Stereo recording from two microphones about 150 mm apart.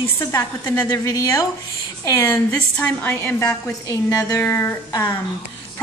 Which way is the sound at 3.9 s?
25° left (ahead or behind).